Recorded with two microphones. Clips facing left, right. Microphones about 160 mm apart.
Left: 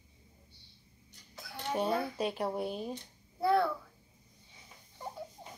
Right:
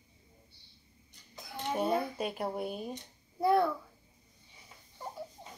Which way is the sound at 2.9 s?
20° right (ahead or behind).